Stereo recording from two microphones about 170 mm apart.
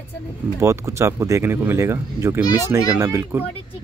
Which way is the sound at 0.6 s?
15° right (ahead or behind).